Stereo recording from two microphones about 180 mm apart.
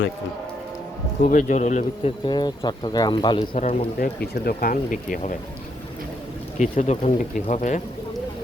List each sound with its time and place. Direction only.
1.3 s a man's voice: 45° left (ahead or behind)
2.2 s speech: 25° left (ahead or behind)
3.5 s a man's voice: 40° left (ahead or behind)
4.2 s speech: 55° left (ahead or behind)
6.6 s a man's voice: 40° left (ahead or behind)